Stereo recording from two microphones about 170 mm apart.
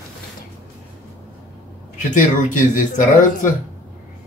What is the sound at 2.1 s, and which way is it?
Speech, 50° left (ahead or behind).